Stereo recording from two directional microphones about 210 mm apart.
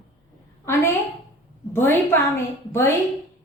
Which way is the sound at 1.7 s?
10° left (ahead or behind).